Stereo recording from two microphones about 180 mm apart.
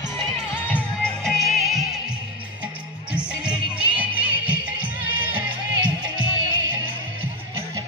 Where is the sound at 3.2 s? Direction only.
5° right (ahead or behind).